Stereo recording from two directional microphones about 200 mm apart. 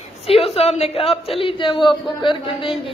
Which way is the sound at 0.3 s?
30° left (ahead or behind).